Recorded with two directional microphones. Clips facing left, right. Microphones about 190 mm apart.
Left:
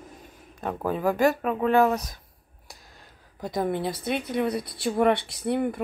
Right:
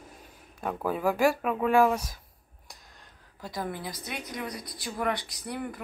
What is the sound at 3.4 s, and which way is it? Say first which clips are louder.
Speech: left 8 dB; 20° left (ahead or behind).